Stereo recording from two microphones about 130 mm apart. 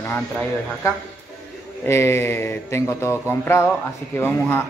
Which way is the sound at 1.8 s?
20° left (ahead or behind).